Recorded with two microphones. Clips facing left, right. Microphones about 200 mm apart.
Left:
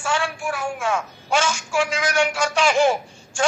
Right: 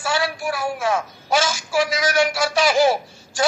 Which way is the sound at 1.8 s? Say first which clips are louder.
Right 2 dB; 40° right (ahead or behind).